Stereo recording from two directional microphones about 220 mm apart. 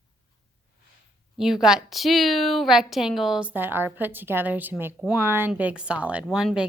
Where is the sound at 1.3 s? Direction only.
Centre (ahead or behind).